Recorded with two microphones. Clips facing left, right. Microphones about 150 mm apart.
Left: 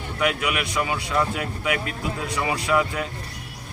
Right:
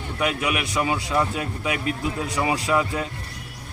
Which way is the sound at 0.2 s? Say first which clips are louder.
Even; 20° right (ahead or behind).